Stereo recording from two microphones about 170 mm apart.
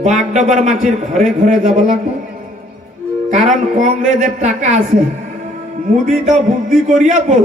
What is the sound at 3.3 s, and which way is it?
A man's voice, 50° right (ahead or behind).